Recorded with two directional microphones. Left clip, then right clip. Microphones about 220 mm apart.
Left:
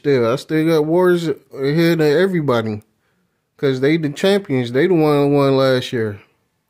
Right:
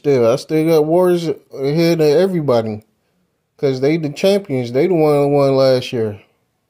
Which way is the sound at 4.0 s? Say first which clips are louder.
Right 2 dB; 10° left (ahead or behind).